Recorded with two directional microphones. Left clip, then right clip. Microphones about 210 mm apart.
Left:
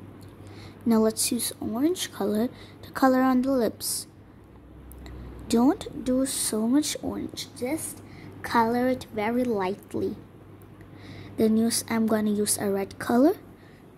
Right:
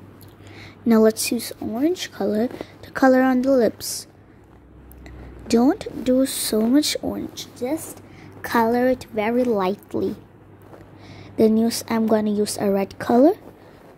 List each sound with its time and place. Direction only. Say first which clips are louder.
0.6 s speech: right 7 dB; 10° right (ahead or behind)
5.5 s speech: right 5 dB; 5° right (ahead or behind)
11.3 s speech: right 6 dB; 10° right (ahead or behind)